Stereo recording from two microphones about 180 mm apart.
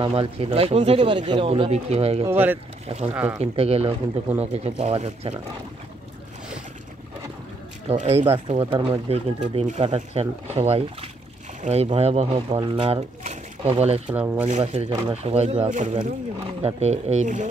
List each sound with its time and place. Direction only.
0.0 s speech: 30° right (ahead or behind)
2.2 s speech: 10° right (ahead or behind)
2.9 s speech: 35° right (ahead or behind)
7.9 s speech: 40° right (ahead or behind)
9.4 s speech: 40° right (ahead or behind)
13.2 s a sound: 40° right (ahead or behind)
14.1 s speech: 10° right (ahead or behind)
14.4 s speech: 35° right (ahead or behind)